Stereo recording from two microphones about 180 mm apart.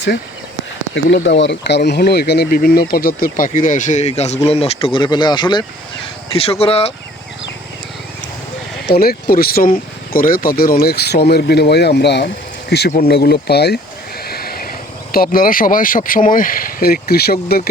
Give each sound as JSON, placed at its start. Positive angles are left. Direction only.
{"t": 0.9, "sound": "speech", "side_deg": 75}
{"t": 8.9, "sound": "speech", "side_deg": 60}
{"t": 14.3, "sound": "a sound", "side_deg": 60}
{"t": 15.1, "sound": "speech", "side_deg": 55}